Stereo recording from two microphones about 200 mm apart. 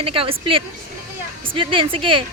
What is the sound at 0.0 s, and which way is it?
Speech, 25° right (ahead or behind).